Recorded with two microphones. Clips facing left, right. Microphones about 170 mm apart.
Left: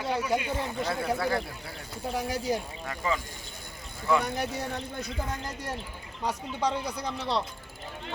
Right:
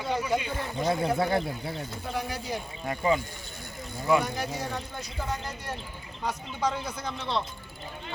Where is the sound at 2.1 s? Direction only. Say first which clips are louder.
Left 3 dB; 40° left (ahead or behind).